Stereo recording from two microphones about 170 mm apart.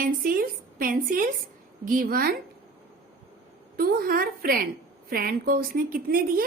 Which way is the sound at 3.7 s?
60° right (ahead or behind).